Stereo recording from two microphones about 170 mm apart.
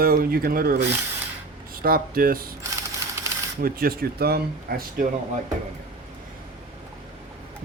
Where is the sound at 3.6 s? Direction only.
60° right (ahead or behind).